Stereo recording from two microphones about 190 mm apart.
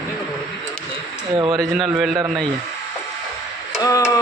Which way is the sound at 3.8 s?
20° left (ahead or behind).